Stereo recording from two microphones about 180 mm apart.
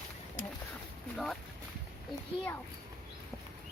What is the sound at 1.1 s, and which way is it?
Boat, centre (ahead or behind).